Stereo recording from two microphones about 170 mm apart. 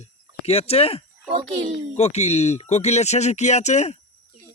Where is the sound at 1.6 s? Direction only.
40° right (ahead or behind).